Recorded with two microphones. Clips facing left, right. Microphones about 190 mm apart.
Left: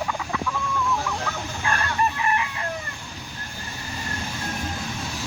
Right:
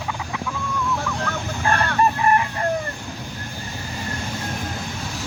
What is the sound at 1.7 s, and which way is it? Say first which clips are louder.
Chicken: right 5 dB; 60° right (ahead or behind).